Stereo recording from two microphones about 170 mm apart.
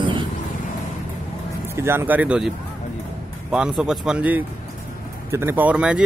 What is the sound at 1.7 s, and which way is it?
Speech, 15° right (ahead or behind).